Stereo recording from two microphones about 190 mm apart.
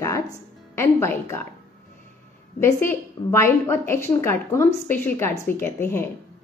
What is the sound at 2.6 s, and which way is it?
A woman's voice, 10° left (ahead or behind).